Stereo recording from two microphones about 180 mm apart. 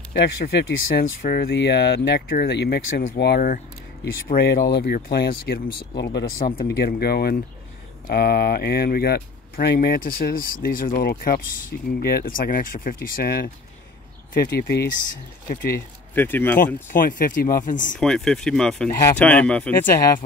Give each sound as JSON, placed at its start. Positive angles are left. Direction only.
{"t": 0.1, "sound": "speech", "side_deg": 75}
{"t": 1.2, "sound": "speech", "side_deg": 60}
{"t": 16.2, "sound": "speech", "side_deg": 10}
{"t": 16.6, "sound": "speech", "side_deg": 50}
{"t": 17.9, "sound": "speech", "side_deg": 5}